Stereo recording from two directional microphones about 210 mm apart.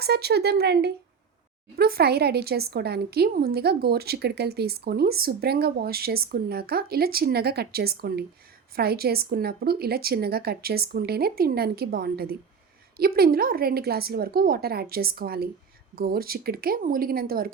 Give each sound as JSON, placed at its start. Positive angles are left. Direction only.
{"t": 0.0, "sound": "speech", "side_deg": -50}